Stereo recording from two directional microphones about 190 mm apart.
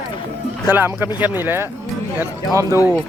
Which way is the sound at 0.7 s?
10° right (ahead or behind).